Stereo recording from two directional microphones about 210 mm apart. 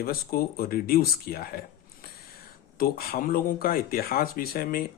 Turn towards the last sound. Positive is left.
turn(degrees=45)  # may be behind; listen again after turning